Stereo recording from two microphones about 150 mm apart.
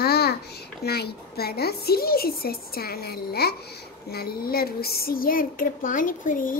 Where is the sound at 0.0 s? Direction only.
90° left.